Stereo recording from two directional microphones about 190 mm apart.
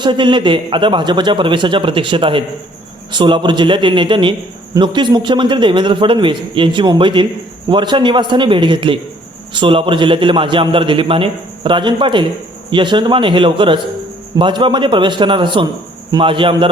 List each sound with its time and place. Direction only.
0.0 s a man's voice: 25° right (ahead or behind)